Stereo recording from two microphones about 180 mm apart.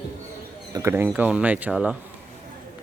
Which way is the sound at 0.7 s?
15° right (ahead or behind).